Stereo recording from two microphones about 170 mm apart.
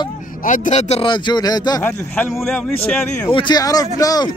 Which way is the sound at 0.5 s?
40° left (ahead or behind).